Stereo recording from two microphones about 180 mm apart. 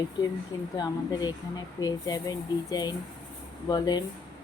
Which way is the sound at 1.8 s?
20° left (ahead or behind).